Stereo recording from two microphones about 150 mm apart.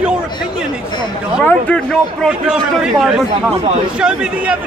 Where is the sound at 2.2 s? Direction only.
5° right (ahead or behind).